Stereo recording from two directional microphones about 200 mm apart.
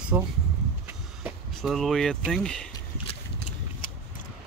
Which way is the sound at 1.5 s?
Centre (ahead or behind).